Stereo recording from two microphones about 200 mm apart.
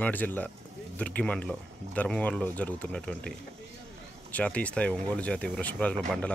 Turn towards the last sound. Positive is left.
turn(degrees=5)  # may be behind; listen again after turning